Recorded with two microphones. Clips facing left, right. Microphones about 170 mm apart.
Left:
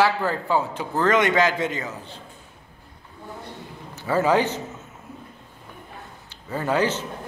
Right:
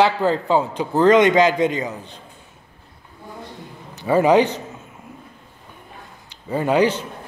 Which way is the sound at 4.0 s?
15° right (ahead or behind).